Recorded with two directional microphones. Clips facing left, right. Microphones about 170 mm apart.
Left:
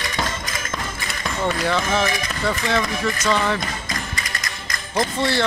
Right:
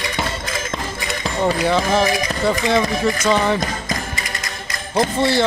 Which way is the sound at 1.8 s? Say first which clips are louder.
Right 4 dB; 35° right (ahead or behind).